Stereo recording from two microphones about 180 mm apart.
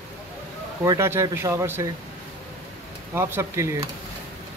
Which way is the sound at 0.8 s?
15° right (ahead or behind).